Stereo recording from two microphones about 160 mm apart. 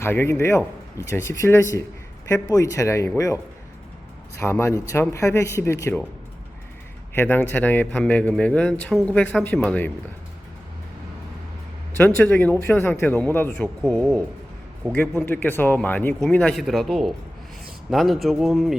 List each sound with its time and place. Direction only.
0.0 s speech: 15° left (ahead or behind)
7.1 s speech: 15° left (ahead or behind)
11.9 s speech: 10° left (ahead or behind)
14.9 s speech: 15° left (ahead or behind)